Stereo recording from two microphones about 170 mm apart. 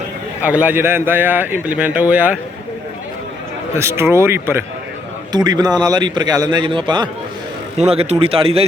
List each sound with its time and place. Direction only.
0.4 s speech: 10° right (ahead or behind)
3.8 s a man's voice: 15° right (ahead or behind)
7.8 s a man's voice: 40° right (ahead or behind)